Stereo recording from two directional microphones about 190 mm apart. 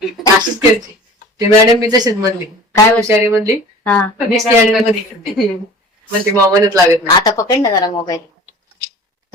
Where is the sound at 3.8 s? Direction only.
5° left (ahead or behind).